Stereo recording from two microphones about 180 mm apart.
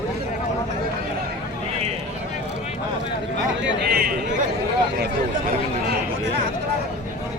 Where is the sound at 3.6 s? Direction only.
60° right (ahead or behind).